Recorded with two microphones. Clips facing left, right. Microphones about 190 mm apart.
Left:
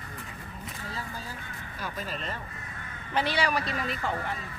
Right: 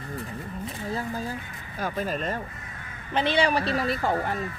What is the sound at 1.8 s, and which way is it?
Speech, 50° right (ahead or behind).